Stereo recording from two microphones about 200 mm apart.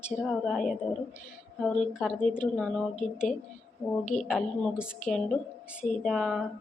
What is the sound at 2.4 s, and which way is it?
Speech, 5° left (ahead or behind).